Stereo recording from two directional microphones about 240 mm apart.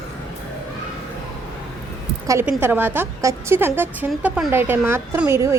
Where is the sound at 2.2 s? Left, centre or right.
Centre.